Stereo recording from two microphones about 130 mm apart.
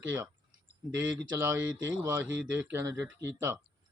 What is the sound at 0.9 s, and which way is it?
Speech, 15° right (ahead or behind).